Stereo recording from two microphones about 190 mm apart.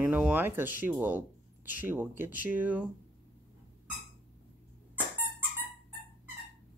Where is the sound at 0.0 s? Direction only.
5° right (ahead or behind).